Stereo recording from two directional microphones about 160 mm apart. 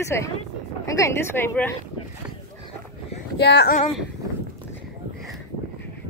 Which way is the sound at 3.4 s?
90° left.